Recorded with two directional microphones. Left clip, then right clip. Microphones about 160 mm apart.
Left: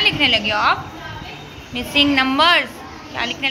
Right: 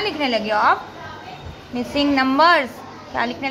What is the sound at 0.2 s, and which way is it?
Speech, 20° right (ahead or behind).